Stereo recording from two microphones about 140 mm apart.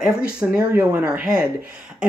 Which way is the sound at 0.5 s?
15° right (ahead or behind).